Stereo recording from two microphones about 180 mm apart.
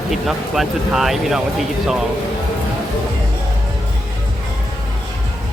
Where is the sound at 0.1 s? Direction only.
Centre (ahead or behind).